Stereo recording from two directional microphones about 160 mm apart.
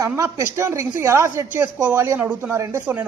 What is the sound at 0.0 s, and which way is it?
A man's voice, 20° right (ahead or behind).